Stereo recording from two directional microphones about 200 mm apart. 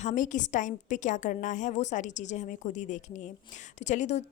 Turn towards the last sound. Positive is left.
turn(degrees=35)  # may be behind; listen again after turning